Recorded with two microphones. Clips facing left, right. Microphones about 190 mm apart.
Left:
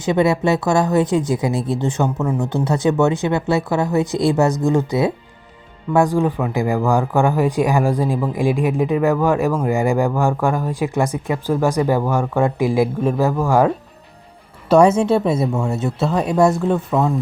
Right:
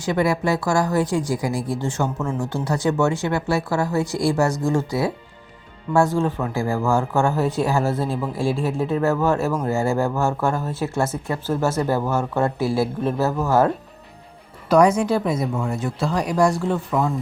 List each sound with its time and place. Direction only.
0.0 s speech: 20° left (ahead or behind)
14.7 s speech: 25° left (ahead or behind)